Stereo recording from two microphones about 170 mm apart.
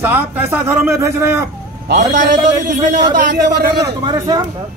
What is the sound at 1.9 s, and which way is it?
Speech, 90° right.